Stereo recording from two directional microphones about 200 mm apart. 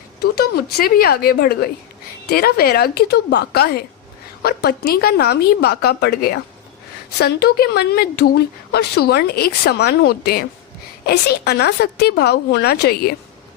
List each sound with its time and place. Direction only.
0.2 s speech: 50° left (ahead or behind)